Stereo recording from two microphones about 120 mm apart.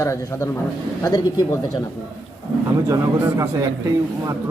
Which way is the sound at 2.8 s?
25° right (ahead or behind).